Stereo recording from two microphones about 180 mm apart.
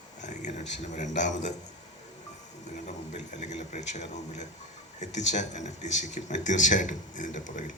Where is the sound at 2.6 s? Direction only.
40° left (ahead or behind).